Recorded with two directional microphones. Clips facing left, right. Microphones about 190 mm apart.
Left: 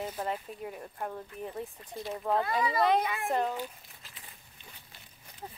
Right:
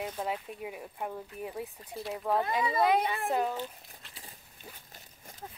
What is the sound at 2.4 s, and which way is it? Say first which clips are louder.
Speech: even; 25° right (ahead or behind).